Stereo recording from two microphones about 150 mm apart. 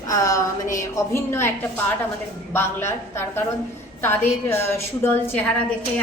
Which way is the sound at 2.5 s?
15° left (ahead or behind).